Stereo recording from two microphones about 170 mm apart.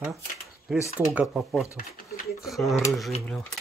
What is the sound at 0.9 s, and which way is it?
Speech, 5° right (ahead or behind).